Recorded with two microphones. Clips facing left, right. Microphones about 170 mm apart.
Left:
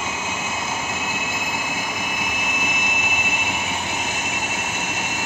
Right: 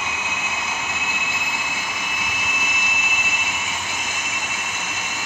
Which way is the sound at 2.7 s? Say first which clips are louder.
Left 3 dB; 55° left (ahead or behind).